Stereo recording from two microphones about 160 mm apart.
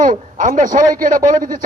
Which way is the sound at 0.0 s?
55° right (ahead or behind).